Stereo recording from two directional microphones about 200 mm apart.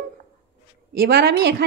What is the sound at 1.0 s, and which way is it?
Speech, 50° right (ahead or behind).